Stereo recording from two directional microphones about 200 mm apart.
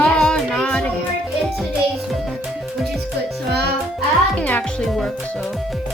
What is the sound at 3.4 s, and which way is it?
Music, 55° right (ahead or behind).